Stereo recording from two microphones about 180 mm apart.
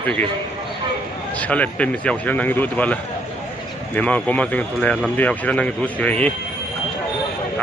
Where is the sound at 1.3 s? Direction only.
10° left (ahead or behind).